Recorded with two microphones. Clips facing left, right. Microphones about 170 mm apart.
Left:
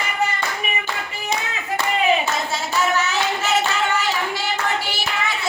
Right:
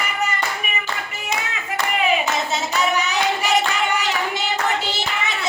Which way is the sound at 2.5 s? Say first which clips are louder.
Even; 15° right (ahead or behind).